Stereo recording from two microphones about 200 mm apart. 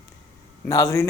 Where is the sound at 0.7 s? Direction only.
15° left (ahead or behind).